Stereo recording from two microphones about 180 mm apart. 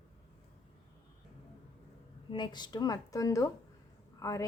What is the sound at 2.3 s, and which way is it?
A woman's voice, 25° left (ahead or behind).